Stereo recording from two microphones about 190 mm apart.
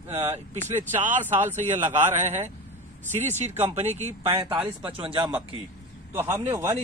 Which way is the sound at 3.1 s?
35° right (ahead or behind).